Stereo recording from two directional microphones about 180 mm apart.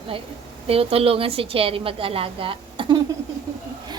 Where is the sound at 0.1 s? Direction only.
30° right (ahead or behind).